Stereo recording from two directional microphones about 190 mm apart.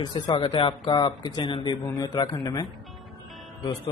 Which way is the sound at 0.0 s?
25° left (ahead or behind).